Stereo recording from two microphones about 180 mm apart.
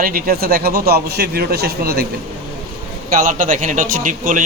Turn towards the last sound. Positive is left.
turn(degrees=-50)  # may be behind; listen again after turning